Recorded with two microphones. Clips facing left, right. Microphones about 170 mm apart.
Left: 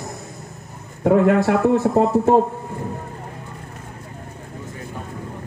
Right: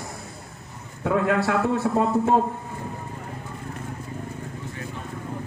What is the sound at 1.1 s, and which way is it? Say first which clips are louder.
A man's voice: left 7 dB; 40° left (ahead or behind).